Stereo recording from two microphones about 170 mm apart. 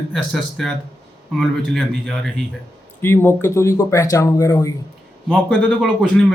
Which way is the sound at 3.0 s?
15° left (ahead or behind).